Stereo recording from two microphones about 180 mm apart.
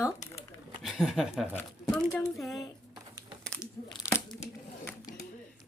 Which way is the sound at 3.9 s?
15° left (ahead or behind).